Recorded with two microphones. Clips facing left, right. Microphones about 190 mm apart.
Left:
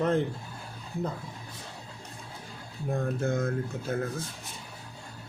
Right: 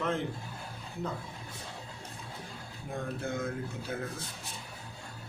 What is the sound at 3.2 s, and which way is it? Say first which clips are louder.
Speech: left 6 dB; 45° left (ahead or behind).